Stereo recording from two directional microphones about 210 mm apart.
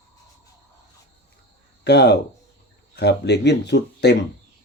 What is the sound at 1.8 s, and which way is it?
Speech, 50° left (ahead or behind).